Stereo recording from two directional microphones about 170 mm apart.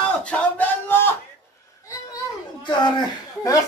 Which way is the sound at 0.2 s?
10° left (ahead or behind).